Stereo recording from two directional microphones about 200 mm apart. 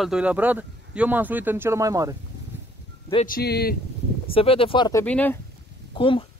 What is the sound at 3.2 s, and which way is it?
Speech, 50° left (ahead or behind).